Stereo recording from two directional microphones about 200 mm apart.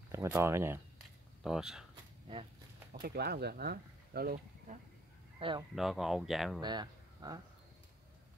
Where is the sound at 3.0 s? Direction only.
50° right (ahead or behind).